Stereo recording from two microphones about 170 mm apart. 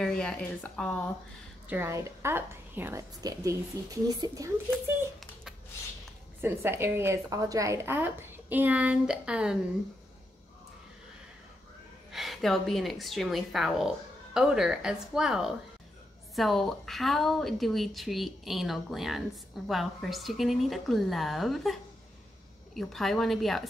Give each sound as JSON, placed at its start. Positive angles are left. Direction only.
{"t": 0.0, "sound": "a woman's voice", "side_deg": 5}
{"t": 1.7, "sound": "a woman's voice", "side_deg": -15}
{"t": 6.4, "sound": "a woman's voice", "side_deg": -15}
{"t": 12.1, "sound": "a woman's voice", "side_deg": 0}
{"t": 22.8, "sound": "a woman's voice", "side_deg": 0}